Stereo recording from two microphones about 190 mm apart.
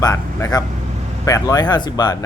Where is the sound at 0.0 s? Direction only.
15° left (ahead or behind).